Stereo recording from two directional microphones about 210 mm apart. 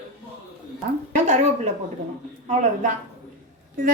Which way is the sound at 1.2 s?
35° right (ahead or behind).